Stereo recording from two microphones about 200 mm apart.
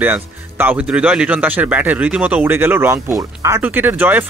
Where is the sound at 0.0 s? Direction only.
10° right (ahead or behind).